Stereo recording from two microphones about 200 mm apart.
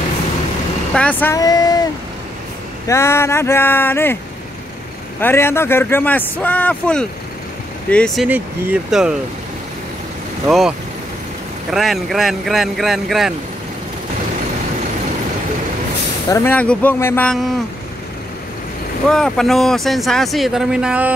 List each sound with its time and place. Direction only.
0.9 s speech: 10° left (ahead or behind)
2.9 s speech: 15° left (ahead or behind)
5.2 s speech: 10° left (ahead or behind); by 9.1 s 5° right (ahead or behind)
11.7 s speech: centre (ahead or behind)
16.3 s speech: 15° left (ahead or behind)
19.0 s speech: centre (ahead or behind)